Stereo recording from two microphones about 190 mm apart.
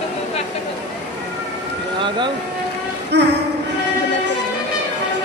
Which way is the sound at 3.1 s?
65° right (ahead or behind).